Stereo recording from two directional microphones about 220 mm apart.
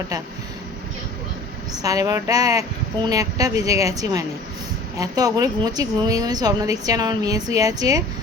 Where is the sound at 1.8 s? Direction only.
15° right (ahead or behind).